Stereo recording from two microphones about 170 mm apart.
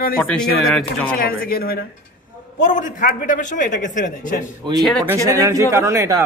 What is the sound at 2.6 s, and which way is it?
A man's voice, 50° left (ahead or behind).